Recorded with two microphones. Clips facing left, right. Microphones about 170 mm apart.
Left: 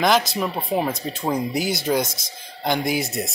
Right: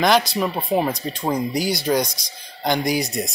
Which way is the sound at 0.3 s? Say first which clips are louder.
Right 2 dB; centre (ahead or behind).